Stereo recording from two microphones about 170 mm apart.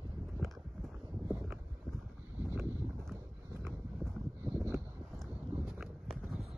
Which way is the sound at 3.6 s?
15° right (ahead or behind).